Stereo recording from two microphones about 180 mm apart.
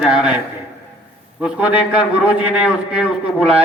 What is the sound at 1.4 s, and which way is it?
A man's voice, 5° right (ahead or behind).